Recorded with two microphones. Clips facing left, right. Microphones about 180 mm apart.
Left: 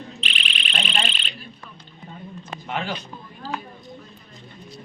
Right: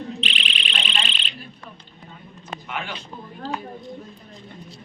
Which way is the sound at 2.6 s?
35° left (ahead or behind).